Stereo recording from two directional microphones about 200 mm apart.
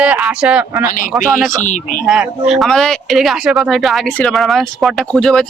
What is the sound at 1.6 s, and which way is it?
Speech, 40° left (ahead or behind).